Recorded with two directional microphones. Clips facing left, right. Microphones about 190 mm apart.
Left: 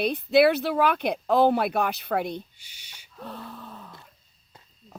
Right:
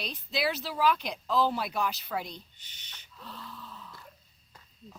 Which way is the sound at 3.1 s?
55° left (ahead or behind).